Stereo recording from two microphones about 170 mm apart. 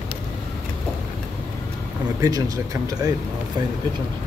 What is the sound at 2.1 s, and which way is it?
Speech, 20° right (ahead or behind).